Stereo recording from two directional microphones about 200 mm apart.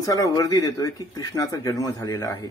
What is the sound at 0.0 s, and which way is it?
Speech, 15° left (ahead or behind).